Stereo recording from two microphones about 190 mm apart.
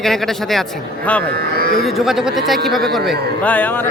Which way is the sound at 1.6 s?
50° left (ahead or behind).